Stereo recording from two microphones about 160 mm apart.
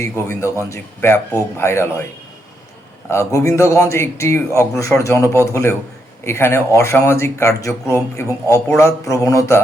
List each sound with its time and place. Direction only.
0.0 s speech: 15° left (ahead or behind)
3.1 s a man's voice: 20° left (ahead or behind)